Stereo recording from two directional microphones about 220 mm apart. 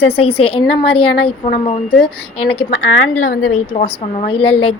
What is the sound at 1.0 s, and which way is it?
A woman's voice, 45° left (ahead or behind).